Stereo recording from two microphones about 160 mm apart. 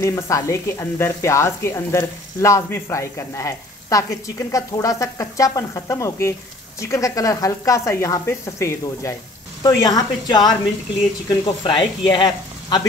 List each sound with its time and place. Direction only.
0.0 s speech: 20° left (ahead or behind)